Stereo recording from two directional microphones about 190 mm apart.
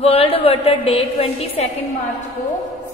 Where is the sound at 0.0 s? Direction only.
30° left (ahead or behind).